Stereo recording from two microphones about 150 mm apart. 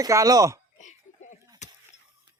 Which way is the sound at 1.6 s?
50° left (ahead or behind).